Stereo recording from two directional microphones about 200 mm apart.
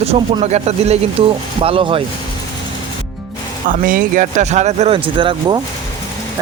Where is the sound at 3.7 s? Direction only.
40° right (ahead or behind).